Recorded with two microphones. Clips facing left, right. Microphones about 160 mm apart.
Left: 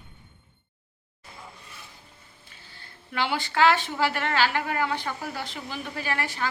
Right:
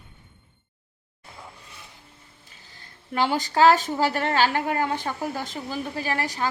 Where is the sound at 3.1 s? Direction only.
40° right (ahead or behind).